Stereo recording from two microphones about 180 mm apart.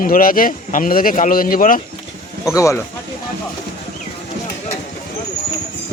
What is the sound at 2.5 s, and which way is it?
Speech, 15° left (ahead or behind).